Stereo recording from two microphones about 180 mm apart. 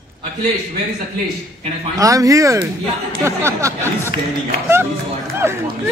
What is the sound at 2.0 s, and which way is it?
Speech, 20° right (ahead or behind).